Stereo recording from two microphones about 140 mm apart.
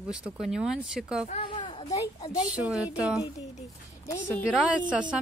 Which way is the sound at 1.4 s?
40° left (ahead or behind).